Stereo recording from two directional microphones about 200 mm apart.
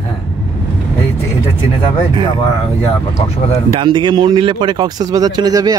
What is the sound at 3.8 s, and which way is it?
Speech, 25° right (ahead or behind).